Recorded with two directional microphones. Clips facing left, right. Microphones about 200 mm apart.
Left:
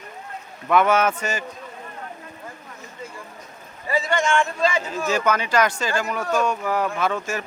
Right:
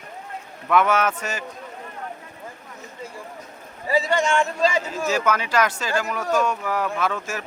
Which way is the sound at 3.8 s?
35° right (ahead or behind).